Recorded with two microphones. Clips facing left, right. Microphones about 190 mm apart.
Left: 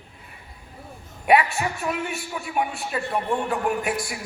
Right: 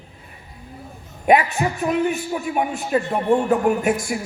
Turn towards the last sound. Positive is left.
turn(degrees=-45)  # may be behind; listen again after turning